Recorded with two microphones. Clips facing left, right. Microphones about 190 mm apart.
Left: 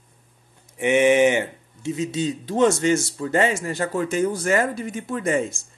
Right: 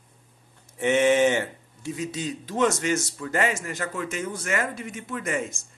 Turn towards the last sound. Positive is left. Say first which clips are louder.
# left 6 dB
turn(degrees=30)  # may be behind; listen again after turning